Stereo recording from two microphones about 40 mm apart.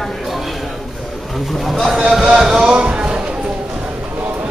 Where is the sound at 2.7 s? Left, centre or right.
Right.